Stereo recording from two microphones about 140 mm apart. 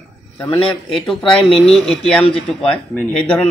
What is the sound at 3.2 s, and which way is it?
Speech, 5° left (ahead or behind).